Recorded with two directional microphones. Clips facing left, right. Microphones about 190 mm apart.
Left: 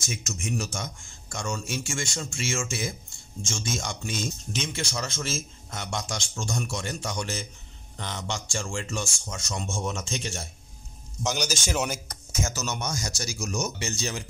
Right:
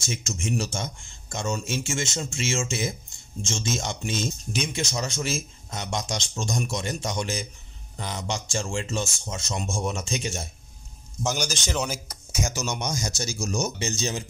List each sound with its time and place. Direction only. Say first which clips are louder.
0.0 s a man's voice: right 3 dB; 30° right (ahead or behind)
11.2 s a man's voice: even; centre (ahead or behind)
12.1 s speech: right 2 dB; 10° right (ahead or behind)